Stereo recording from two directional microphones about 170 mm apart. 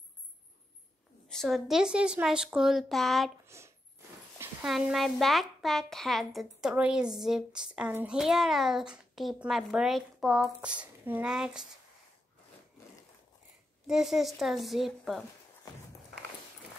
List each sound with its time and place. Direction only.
1.3 s a woman's voice: centre (ahead or behind)
3.4 s zipper: 15° right (ahead or behind)
4.6 s a woman's voice: centre (ahead or behind)
13.8 s a woman's voice: centre (ahead or behind)